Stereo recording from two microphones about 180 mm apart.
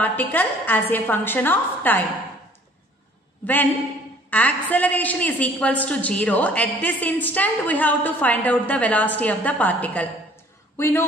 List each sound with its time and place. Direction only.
0.0 s a woman's voice: 10° left (ahead or behind)
4.3 s a woman's voice: 10° left (ahead or behind)